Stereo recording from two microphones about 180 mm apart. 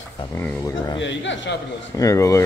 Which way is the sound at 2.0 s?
20° left (ahead or behind).